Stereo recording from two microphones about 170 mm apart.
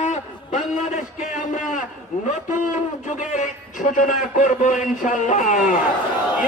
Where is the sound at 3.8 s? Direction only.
50° left (ahead or behind).